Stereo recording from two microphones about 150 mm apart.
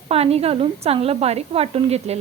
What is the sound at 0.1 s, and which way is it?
A woman's voice, 40° right (ahead or behind).